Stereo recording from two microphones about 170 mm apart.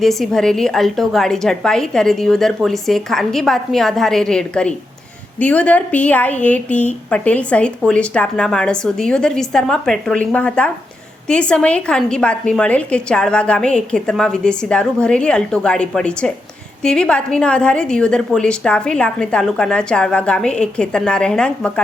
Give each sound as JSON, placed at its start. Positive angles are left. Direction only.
{"t": 0.0, "sound": "a woman's voice", "side_deg": 0}